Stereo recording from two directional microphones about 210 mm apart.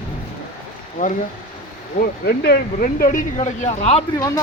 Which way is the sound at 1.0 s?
40° left (ahead or behind).